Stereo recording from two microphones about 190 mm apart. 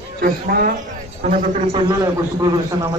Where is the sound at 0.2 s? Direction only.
50° right (ahead or behind).